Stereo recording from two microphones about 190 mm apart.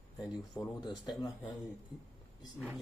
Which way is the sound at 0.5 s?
5° left (ahead or behind).